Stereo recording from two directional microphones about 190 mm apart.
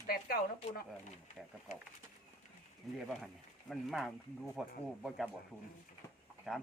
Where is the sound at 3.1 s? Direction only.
Centre (ahead or behind).